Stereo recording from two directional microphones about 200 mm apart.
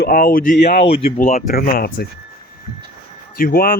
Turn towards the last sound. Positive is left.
turn(degrees=45)  # may be behind; listen again after turning